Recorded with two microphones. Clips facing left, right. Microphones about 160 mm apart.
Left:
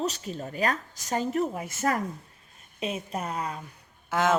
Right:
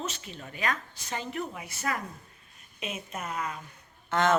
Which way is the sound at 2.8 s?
35° left (ahead or behind).